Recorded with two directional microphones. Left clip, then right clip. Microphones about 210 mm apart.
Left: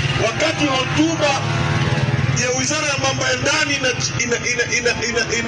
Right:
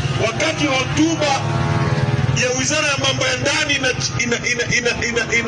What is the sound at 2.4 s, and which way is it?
Speech, 45° left (ahead or behind).